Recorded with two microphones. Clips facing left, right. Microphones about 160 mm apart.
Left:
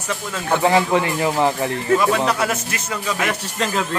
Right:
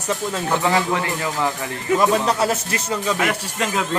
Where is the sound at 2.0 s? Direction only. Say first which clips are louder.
Right 1 dB; 35° right (ahead or behind).